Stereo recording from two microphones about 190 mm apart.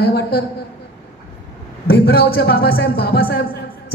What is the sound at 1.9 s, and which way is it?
Speech, 55° left (ahead or behind).